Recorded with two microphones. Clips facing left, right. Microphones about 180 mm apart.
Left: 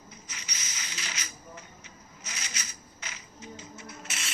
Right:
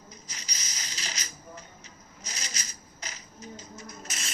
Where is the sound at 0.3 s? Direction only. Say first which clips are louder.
Left 2 dB; 35° right (ahead or behind).